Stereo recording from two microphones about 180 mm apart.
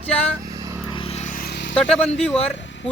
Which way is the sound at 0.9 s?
35° left (ahead or behind).